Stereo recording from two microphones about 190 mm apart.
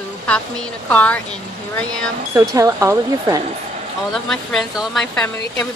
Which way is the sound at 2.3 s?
15° right (ahead or behind).